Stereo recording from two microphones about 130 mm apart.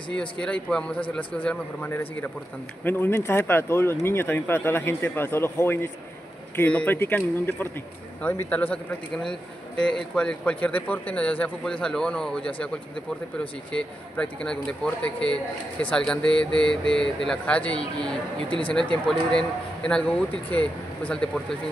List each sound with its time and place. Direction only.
0.1 s speech: 10° left (ahead or behind)